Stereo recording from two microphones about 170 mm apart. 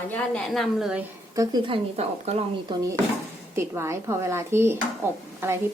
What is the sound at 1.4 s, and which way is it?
Speech, 25° right (ahead or behind).